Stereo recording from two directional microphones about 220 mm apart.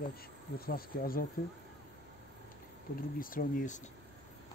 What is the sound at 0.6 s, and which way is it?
Speech, 40° left (ahead or behind).